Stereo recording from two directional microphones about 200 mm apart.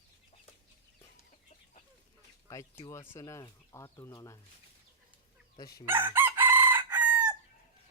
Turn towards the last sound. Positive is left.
turn(degrees=-10)  # may be behind; listen again after turning